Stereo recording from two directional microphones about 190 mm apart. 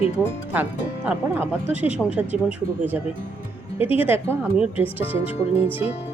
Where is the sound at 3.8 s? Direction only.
30° left (ahead or behind).